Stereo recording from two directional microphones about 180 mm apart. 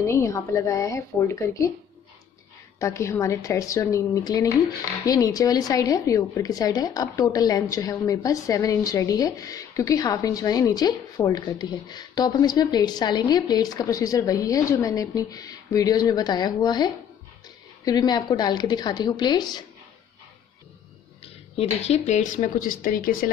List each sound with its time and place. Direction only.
0.0 s a woman's voice: 15° left (ahead or behind)
2.8 s a woman's voice: 15° left (ahead or behind)
21.5 s speech: 35° left (ahead or behind); by 23.3 s 55° left (ahead or behind)